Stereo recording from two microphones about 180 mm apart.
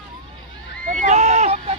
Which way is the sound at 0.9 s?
40° right (ahead or behind).